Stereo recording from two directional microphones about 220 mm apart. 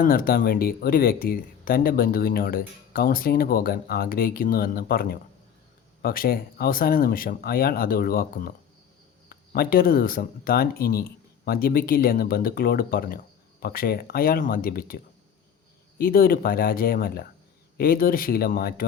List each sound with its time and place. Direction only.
0.0 s speech: 40° left (ahead or behind)